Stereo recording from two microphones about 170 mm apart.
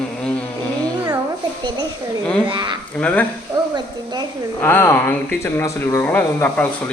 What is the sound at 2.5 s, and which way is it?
Speech, 25° right (ahead or behind).